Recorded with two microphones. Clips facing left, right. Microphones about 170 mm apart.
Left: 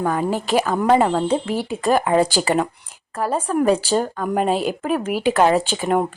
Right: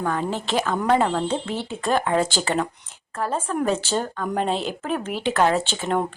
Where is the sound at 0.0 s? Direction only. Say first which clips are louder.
Left 4 dB; 10° left (ahead or behind).